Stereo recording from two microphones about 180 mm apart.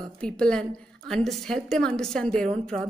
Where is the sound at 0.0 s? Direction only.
5° left (ahead or behind).